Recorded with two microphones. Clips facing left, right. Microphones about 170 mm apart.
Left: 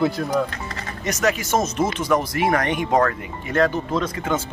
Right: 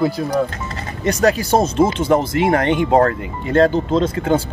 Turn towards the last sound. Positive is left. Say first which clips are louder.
# right 6 dB
turn(degrees=-30)  # may be behind; listen again after turning